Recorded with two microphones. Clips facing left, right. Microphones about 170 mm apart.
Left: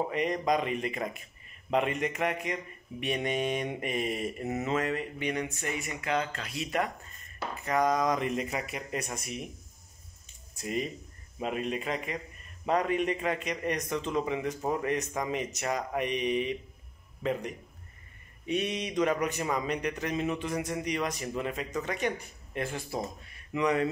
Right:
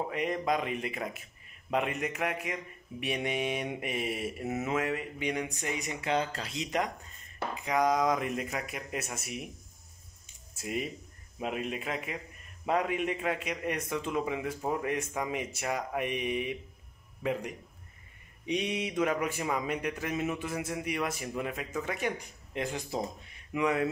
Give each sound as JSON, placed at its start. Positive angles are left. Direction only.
{"t": 0.1, "sound": "speech", "side_deg": -5}
{"t": 6.6, "sound": "speech", "side_deg": -15}
{"t": 10.5, "sound": "speech", "side_deg": -5}
{"t": 23.5, "sound": "speech", "side_deg": -5}